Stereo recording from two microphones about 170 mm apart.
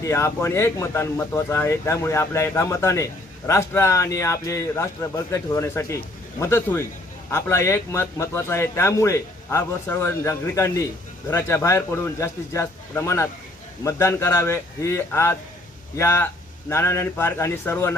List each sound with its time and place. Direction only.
0.0 s speech: 15° left (ahead or behind)